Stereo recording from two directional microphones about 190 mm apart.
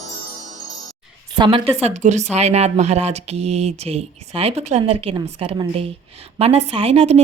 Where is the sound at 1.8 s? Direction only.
40° right (ahead or behind).